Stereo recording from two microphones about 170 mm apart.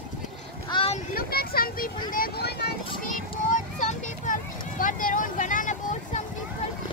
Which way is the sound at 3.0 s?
50° left (ahead or behind).